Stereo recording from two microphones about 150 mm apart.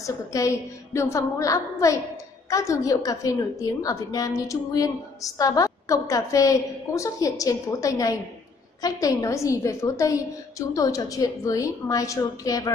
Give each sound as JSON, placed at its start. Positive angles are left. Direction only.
{"t": 0.0, "sound": "a woman's voice", "side_deg": 20}